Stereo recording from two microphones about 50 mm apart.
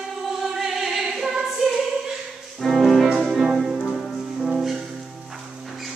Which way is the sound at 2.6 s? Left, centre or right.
Centre.